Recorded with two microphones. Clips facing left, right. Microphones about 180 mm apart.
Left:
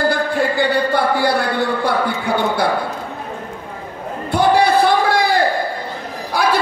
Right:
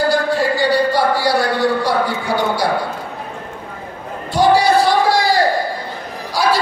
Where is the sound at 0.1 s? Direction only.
55° left (ahead or behind).